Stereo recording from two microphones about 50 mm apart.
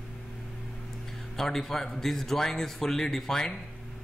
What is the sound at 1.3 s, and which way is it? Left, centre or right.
A man's voice, centre.